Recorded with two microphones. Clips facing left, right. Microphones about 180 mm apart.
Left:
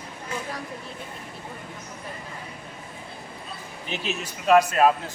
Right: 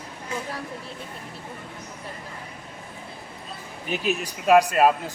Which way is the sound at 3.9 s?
50° right (ahead or behind).